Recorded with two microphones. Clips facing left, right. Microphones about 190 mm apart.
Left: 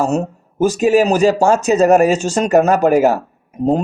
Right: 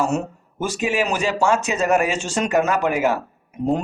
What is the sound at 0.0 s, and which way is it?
Speech, 35° left (ahead or behind).